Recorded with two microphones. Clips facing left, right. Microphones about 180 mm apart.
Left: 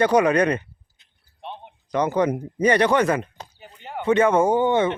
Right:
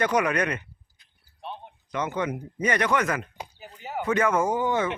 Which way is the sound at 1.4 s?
20° left (ahead or behind).